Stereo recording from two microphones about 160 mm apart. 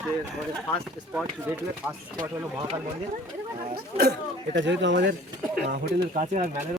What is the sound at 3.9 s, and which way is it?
Speech, 90° right.